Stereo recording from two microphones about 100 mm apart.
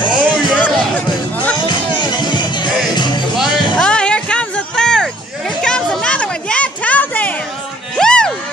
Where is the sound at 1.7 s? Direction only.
50° left (ahead or behind).